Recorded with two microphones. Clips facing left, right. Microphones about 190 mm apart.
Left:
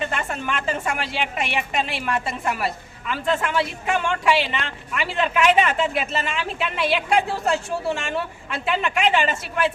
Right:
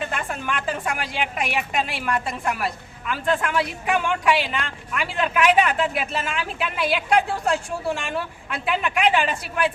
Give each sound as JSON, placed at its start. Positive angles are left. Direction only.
{"t": 0.0, "sound": "a woman's voice", "side_deg": 0}